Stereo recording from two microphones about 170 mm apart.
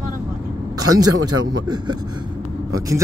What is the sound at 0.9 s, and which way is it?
Speech, 25° right (ahead or behind).